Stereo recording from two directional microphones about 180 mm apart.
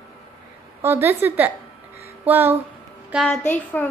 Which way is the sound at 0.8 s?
10° right (ahead or behind).